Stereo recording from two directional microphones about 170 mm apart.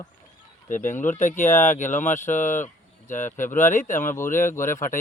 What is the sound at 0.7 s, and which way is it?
Speech, 50° left (ahead or behind).